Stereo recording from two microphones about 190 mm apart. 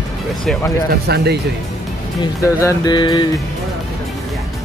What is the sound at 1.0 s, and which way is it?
Speech, 60° right (ahead or behind).